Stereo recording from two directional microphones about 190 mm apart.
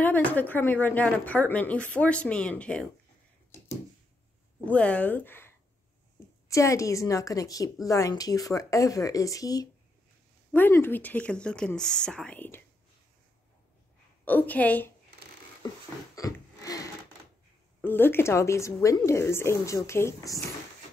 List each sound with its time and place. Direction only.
0.0 s a woman's voice: 10° left (ahead or behind)
4.6 s a woman's voice: 5° left (ahead or behind)
14.2 s a woman's voice: 10° left (ahead or behind)
16.2 s a sound: 20° left (ahead or behind)
17.8 s a woman's voice: 10° left (ahead or behind)